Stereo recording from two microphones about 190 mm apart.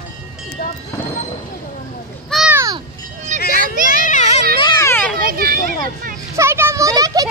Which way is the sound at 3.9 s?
40° left (ahead or behind).